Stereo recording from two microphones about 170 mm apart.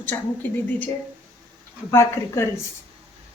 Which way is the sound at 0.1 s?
15° left (ahead or behind).